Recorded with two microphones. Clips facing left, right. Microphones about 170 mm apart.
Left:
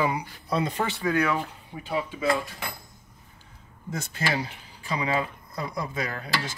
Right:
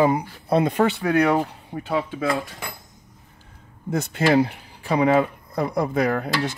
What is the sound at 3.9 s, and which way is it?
Speech, 60° right (ahead or behind).